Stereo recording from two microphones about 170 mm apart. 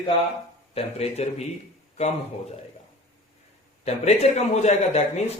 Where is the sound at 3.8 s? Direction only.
40° left (ahead or behind).